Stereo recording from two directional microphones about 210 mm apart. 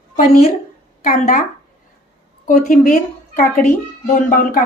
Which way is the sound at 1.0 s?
40° left (ahead or behind).